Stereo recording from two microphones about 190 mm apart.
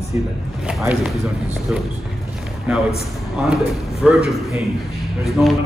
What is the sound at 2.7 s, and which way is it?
Speech, 5° right (ahead or behind).